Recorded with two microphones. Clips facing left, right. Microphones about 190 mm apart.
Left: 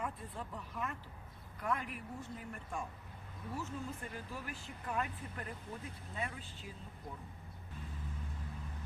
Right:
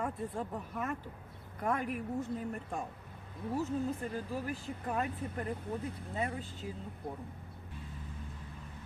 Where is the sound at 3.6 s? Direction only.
35° right (ahead or behind).